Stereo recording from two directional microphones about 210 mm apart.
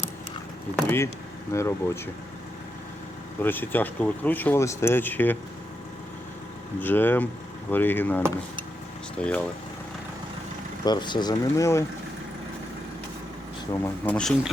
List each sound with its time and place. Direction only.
0.8 s speech: 10° left (ahead or behind)
3.4 s speech: 10° left (ahead or behind)
6.7 s speech: 10° left (ahead or behind)
10.8 s speech: 20° left (ahead or behind)
14.0 s speech: 5° left (ahead or behind)